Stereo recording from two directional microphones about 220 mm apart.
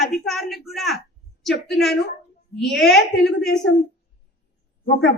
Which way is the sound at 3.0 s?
50° left (ahead or behind).